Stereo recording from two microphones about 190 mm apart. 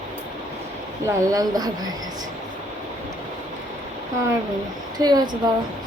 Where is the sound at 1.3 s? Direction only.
20° right (ahead or behind).